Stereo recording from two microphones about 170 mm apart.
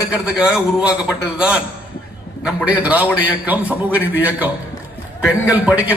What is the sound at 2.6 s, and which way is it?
A man's voice, 10° right (ahead or behind).